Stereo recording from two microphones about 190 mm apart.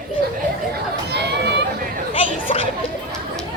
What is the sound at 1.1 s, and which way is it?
Speech, 65° right (ahead or behind).